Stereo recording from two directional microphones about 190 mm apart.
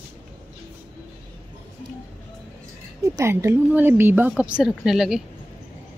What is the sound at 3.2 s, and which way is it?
Speech, 15° right (ahead or behind).